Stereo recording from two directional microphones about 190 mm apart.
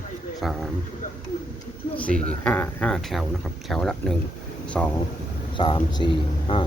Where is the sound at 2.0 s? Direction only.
5° left (ahead or behind).